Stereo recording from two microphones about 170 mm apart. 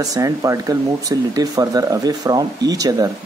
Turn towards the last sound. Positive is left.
turn(degrees=-20)  # may be behind; listen again after turning